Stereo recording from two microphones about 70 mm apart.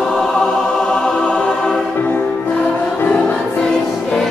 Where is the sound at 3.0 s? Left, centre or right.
Centre.